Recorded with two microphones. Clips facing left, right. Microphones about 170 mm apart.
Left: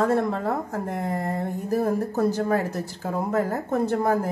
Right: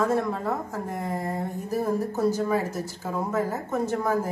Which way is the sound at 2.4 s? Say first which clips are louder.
Left 2 dB; 60° left (ahead or behind).